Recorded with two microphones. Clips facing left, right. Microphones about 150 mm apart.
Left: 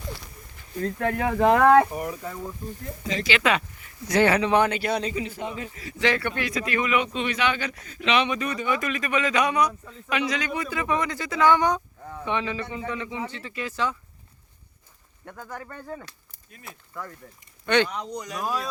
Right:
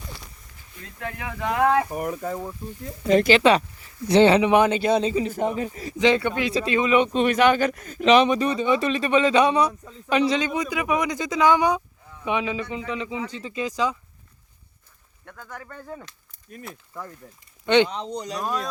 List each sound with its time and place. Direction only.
0.8 s speech: 50° left (ahead or behind)
2.0 s speech: 45° right (ahead or behind)
3.3 s speech: 35° right (ahead or behind)
5.2 s speech: 45° right (ahead or behind)
6.0 s a man's voice: 20° right (ahead or behind)
15.2 s speech: 10° left (ahead or behind)
17.7 s speech: 20° right (ahead or behind)
18.4 s speech: 5° left (ahead or behind)